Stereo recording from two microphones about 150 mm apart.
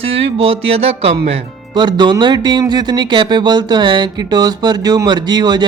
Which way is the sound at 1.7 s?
30° right (ahead or behind).